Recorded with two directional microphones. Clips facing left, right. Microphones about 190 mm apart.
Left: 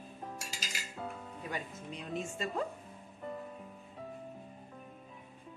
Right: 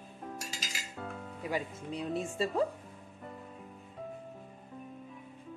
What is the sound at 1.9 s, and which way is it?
Speech, 35° right (ahead or behind).